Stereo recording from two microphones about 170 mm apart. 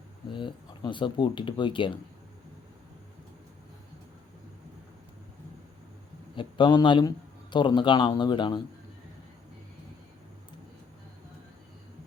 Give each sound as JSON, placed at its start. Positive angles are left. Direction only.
{"t": 0.3, "sound": "speech", "side_deg": 30}
{"t": 6.3, "sound": "speech", "side_deg": 30}